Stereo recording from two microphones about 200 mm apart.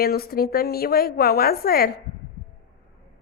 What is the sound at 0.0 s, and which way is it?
A woman's voice, 50° left (ahead or behind).